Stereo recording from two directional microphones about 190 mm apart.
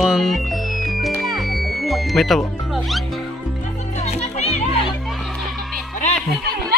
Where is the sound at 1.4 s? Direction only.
Centre (ahead or behind).